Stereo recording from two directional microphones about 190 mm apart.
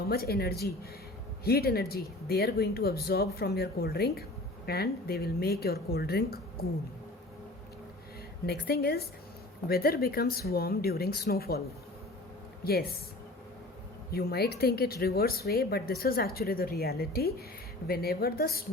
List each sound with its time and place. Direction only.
0.1 s speech: 55° left (ahead or behind)
8.4 s speech: 55° left (ahead or behind)
12.6 s speech: 55° left (ahead or behind)
14.1 s speech: 55° left (ahead or behind)